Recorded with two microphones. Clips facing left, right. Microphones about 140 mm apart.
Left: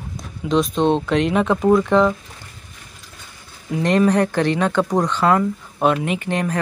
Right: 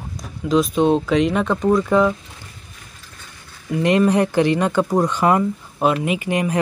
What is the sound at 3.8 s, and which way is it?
Speech, 10° right (ahead or behind).